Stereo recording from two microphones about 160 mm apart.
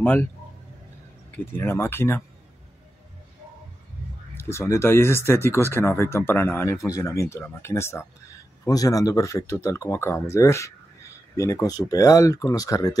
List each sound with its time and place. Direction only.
0.0 s speech: 10° left (ahead or behind)
1.3 s speech: 15° left (ahead or behind)
4.4 s speech: 15° left (ahead or behind)